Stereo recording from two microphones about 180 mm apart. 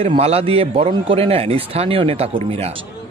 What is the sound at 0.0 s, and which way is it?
A man's voice, 35° right (ahead or behind).